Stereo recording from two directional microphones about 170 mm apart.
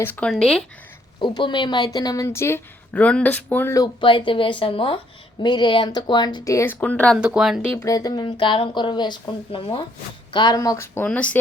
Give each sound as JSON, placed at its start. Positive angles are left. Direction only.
{"t": 0.0, "sound": "speech", "side_deg": 10}
{"t": 1.4, "sound": "speech", "side_deg": 25}
{"t": 4.0, "sound": "speech", "side_deg": 30}
{"t": 7.2, "sound": "speech", "side_deg": -5}
{"t": 7.8, "sound": "speech", "side_deg": 20}